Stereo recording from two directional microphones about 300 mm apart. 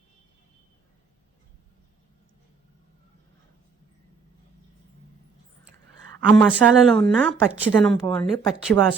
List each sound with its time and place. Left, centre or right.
6.1 s speech: centre